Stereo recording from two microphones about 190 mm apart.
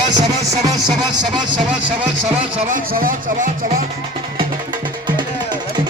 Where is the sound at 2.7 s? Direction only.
45° right (ahead or behind).